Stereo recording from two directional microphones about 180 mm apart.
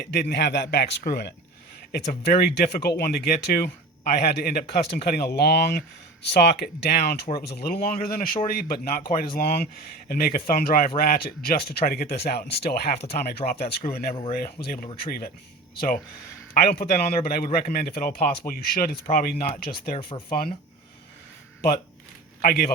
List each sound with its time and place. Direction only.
0.0 s speech: 65° left (ahead or behind)
16.6 s speech: 60° left (ahead or behind)
20.0 s speech: 30° left (ahead or behind)
22.4 s speech: 50° left (ahead or behind)